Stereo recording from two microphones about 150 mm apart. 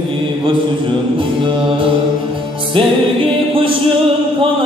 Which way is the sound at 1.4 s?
35° right (ahead or behind).